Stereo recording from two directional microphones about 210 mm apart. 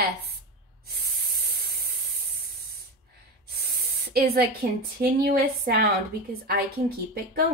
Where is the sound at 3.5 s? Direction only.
45° right (ahead or behind).